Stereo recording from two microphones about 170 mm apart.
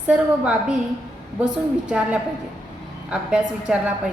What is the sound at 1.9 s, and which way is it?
A woman's voice, 5° right (ahead or behind).